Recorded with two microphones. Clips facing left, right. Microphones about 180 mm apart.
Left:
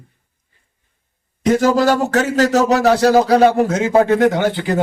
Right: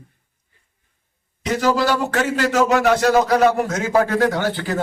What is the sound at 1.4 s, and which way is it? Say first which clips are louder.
A man's voice: left 5 dB; 50° left (ahead or behind).